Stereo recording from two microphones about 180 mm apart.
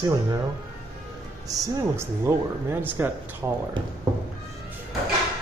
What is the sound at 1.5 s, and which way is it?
Speech, 15° right (ahead or behind).